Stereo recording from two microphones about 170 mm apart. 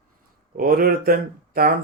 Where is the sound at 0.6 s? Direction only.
60° right (ahead or behind).